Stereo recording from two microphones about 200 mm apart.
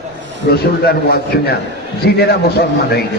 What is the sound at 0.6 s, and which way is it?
A man's voice, 50° left (ahead or behind).